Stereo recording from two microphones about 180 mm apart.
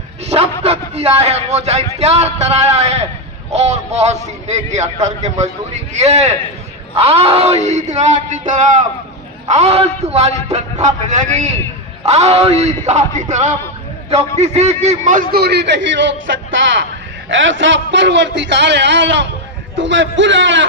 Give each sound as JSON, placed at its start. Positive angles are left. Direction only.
{"t": 0.6, "sound": "a man's voice", "side_deg": -35}
{"t": 17.2, "sound": "a man's voice", "side_deg": -90}